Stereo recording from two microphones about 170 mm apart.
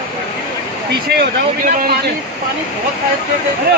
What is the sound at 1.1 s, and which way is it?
Speech, 60° right (ahead or behind).